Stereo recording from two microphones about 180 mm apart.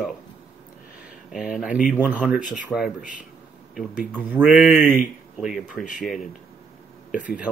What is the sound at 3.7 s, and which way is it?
Speech, 10° right (ahead or behind).